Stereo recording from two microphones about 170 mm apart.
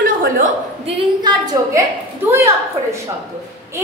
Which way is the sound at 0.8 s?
25° right (ahead or behind).